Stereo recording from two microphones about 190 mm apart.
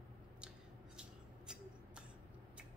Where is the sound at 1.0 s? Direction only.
5° right (ahead or behind).